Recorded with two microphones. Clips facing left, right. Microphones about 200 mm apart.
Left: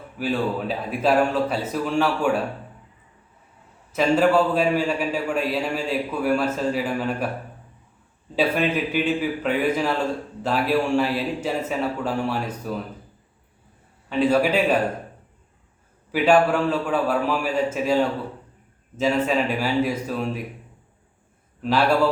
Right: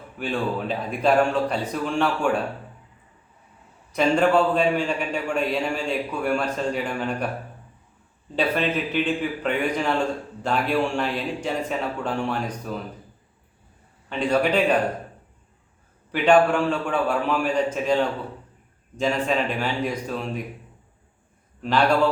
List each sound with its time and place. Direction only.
0.2 s a man's voice: 5° left (ahead or behind)
3.9 s a man's voice: 5° left (ahead or behind)
8.4 s a man's voice: 10° left (ahead or behind)
14.1 s a man's voice: 5° left (ahead or behind)
16.1 s a man's voice: 5° left (ahead or behind)
21.6 s a man's voice: 5° left (ahead or behind)